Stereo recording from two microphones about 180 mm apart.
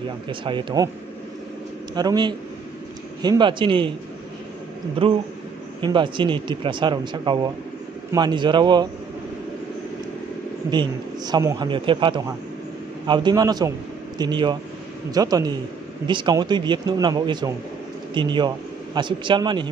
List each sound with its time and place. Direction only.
0.3 s speech: 25° right (ahead or behind)
2.0 s speech: 25° right (ahead or behind)
5.8 s speech: 25° right (ahead or behind)
10.7 s a man's voice: 25° right (ahead or behind)